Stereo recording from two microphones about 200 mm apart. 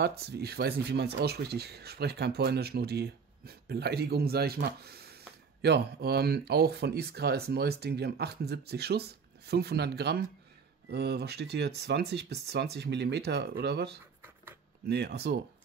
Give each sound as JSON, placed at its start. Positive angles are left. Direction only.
{"t": 0.0, "sound": "speech", "side_deg": -50}